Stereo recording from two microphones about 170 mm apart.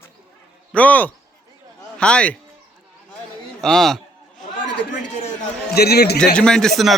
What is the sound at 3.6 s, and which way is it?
Speech, centre (ahead or behind).